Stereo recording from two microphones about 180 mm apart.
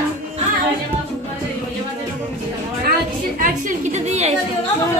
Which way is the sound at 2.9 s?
50° right (ahead or behind).